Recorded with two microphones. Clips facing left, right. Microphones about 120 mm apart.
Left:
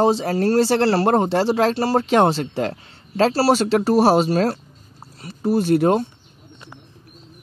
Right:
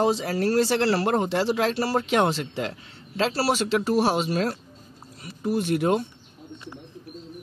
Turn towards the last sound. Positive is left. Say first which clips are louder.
# left 6 dB
turn(degrees=35)  # may be behind; listen again after turning